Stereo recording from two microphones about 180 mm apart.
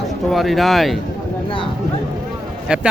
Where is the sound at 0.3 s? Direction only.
Centre (ahead or behind).